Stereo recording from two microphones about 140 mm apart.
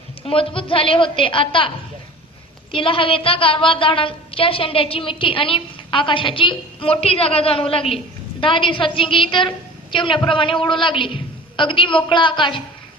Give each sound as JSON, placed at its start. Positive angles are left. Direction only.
{"t": 0.3, "sound": "a woman's voice", "side_deg": 40}
{"t": 2.7, "sound": "a woman's voice", "side_deg": 40}